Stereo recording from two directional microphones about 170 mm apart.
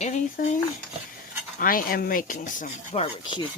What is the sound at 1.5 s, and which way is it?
Speech, 55° left (ahead or behind).